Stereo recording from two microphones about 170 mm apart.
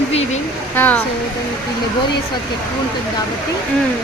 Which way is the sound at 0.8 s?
10° left (ahead or behind).